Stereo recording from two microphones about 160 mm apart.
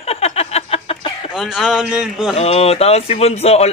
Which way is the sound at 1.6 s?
5° right (ahead or behind).